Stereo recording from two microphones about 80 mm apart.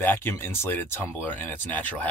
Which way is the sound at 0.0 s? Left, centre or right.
Left.